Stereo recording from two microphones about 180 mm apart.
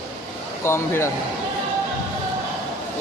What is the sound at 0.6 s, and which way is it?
Speech, 15° left (ahead or behind).